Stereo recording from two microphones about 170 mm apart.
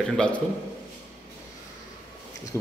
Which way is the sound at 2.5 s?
15° left (ahead or behind).